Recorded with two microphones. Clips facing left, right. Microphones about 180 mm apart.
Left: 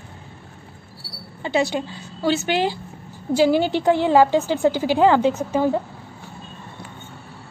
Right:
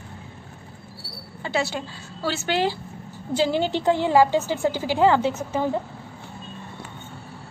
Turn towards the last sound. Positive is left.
turn(degrees=15)  # may be behind; listen again after turning